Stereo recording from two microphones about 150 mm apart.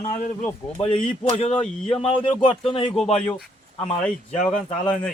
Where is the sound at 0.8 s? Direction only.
40° left (ahead or behind).